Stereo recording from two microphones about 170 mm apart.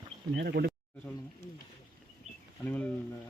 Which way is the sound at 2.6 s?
10° left (ahead or behind).